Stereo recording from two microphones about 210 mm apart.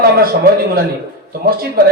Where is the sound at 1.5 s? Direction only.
45° right (ahead or behind).